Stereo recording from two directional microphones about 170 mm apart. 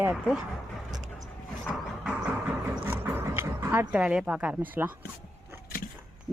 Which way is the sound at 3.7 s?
10° right (ahead or behind).